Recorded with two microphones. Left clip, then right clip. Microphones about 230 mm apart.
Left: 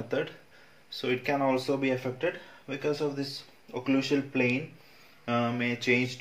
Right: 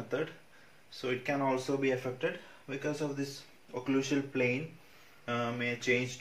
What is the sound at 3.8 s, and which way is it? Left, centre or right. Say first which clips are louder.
Speech: left 4 dB; left.